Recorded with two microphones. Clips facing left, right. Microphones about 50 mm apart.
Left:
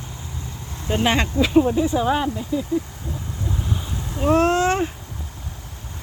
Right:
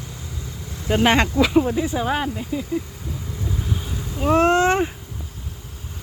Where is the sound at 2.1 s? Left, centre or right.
Right.